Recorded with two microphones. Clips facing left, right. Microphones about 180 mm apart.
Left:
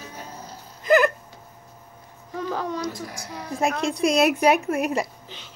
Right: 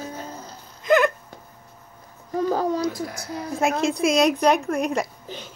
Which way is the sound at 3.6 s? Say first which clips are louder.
Right 1 dB; 5° right (ahead or behind).